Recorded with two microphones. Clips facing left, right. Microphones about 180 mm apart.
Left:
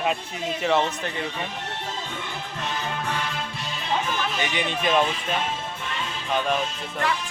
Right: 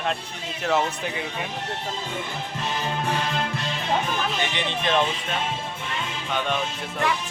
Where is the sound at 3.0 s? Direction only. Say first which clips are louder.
Right 5 dB; 25° right (ahead or behind).